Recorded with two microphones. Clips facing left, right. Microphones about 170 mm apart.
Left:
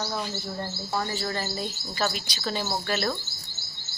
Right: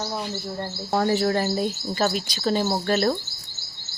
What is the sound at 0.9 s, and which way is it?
Speech, 60° right (ahead or behind).